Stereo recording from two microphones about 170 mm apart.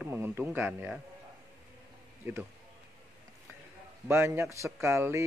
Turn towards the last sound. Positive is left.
turn(degrees=-15)  # may be behind; listen again after turning